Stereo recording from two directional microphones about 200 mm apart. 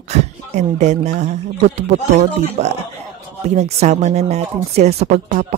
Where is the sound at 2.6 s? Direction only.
30° right (ahead or behind).